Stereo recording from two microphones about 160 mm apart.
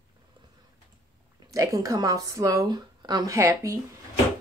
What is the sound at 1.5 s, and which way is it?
Speech, 20° right (ahead or behind).